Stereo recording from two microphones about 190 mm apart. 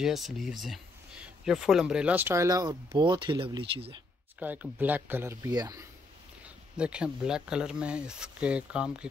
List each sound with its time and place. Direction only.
0.0 s speech: centre (ahead or behind); by 4.0 s 25° right (ahead or behind)
4.4 s speech: 10° right (ahead or behind)
6.4 s speech: 5° right (ahead or behind)